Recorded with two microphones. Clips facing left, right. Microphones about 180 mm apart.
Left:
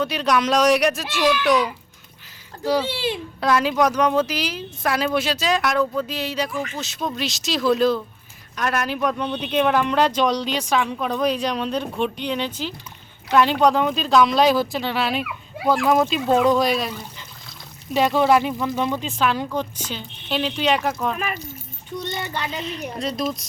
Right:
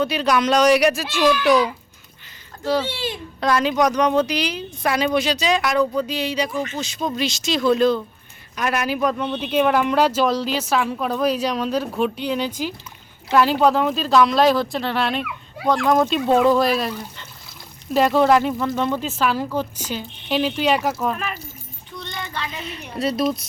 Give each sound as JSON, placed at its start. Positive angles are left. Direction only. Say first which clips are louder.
{"t": 0.0, "sound": "speech", "louder": "right 1 dB", "side_deg": 0}
{"t": 2.6, "sound": "a child's voice", "louder": "left 1 dB", "side_deg": 10}
{"t": 22.0, "sound": "child singing", "louder": "left 3 dB", "side_deg": 20}
{"t": 23.0, "sound": "speech", "louder": "right 6 dB", "side_deg": -5}